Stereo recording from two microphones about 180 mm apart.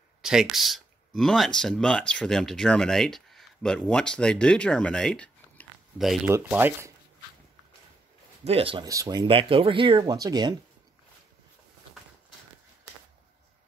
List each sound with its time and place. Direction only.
0.2 s speech: 5° right (ahead or behind)
6.3 s speech: 15° right (ahead or behind)
8.5 s speech: 30° right (ahead or behind)
8.8 s speech: 20° right (ahead or behind)